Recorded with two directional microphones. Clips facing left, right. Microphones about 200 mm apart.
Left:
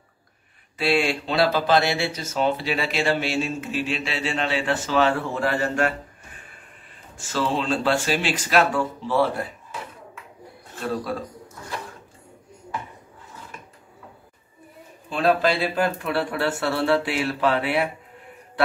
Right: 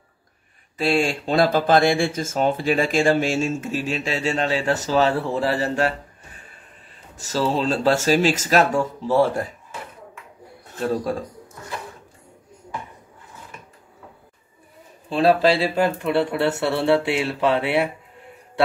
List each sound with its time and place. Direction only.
0.7 s speech: 45° right (ahead or behind)
10.8 s speech: 45° right (ahead or behind)
15.0 s speech: 30° right (ahead or behind)